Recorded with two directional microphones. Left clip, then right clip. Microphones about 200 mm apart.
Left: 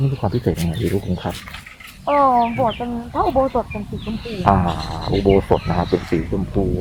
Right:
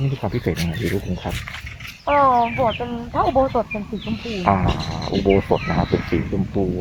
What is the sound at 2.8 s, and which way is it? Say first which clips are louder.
Speech: even; 50° right (ahead or behind).